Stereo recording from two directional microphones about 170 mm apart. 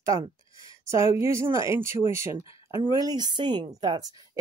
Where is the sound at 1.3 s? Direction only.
15° right (ahead or behind).